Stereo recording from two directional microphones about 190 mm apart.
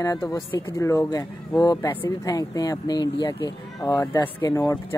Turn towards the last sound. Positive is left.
turn(degrees=20)  # may be behind; listen again after turning